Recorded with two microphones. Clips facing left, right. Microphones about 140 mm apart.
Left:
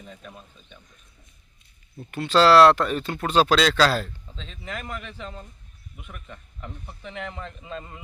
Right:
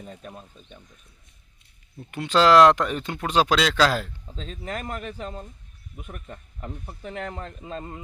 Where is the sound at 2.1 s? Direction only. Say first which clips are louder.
Left 1 dB; 15° right (ahead or behind).